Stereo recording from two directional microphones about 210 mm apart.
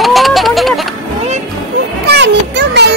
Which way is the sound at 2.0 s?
55° right (ahead or behind).